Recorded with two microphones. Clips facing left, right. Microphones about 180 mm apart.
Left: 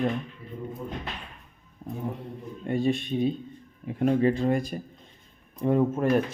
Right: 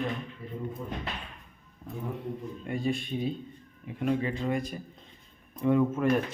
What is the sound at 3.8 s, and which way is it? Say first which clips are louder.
Speech: left 6 dB; 40° left (ahead or behind).